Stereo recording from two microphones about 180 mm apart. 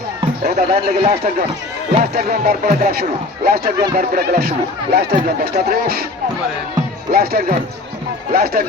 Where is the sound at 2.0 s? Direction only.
55° right (ahead or behind).